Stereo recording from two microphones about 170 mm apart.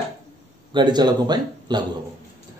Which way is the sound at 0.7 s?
25° right (ahead or behind).